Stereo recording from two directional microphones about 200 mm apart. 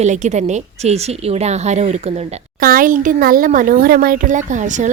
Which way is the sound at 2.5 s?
45° right (ahead or behind).